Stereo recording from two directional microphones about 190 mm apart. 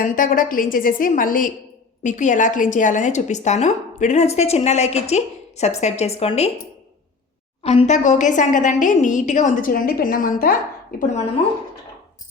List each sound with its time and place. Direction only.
0.0 s a woman's voice: 45° left (ahead or behind)
7.6 s a woman's voice: 35° left (ahead or behind); by 10.5 s 50° left (ahead or behind)